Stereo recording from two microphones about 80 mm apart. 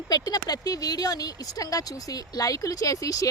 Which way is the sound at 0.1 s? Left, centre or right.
Left.